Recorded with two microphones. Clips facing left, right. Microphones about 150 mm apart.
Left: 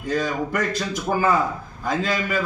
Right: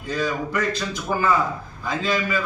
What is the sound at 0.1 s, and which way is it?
Speech, 45° left (ahead or behind).